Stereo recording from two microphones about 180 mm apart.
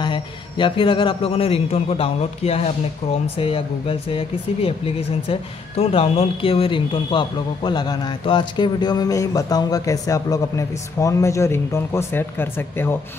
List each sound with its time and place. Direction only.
0.0 s a man's voice: 25° left (ahead or behind)